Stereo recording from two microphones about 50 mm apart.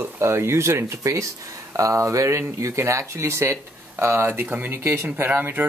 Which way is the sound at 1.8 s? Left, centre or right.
Right.